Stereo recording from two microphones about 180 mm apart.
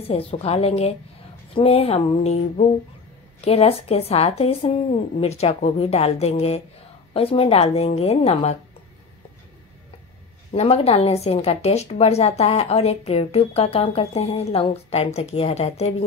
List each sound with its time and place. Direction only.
0.0 s speech: 35° left (ahead or behind)
10.5 s speech: 35° left (ahead or behind)